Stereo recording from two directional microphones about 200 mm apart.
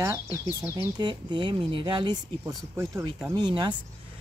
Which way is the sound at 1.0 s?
20° right (ahead or behind).